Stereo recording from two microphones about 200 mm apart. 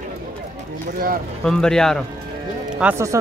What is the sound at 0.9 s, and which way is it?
Speech, 45° right (ahead or behind).